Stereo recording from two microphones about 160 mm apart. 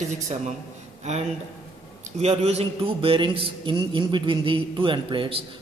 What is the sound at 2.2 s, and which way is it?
Speech, 40° right (ahead or behind).